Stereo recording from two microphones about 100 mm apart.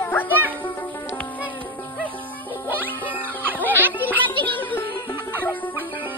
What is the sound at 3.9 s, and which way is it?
Music, 20° left (ahead or behind).